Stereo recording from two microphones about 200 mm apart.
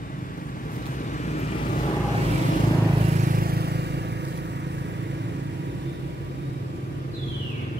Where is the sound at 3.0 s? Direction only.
35° right (ahead or behind); by 5.1 s 60° right (ahead or behind).